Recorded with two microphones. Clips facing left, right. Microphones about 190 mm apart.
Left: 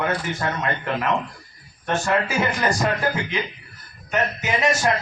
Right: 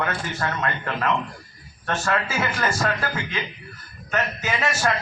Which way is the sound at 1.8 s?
15° left (ahead or behind).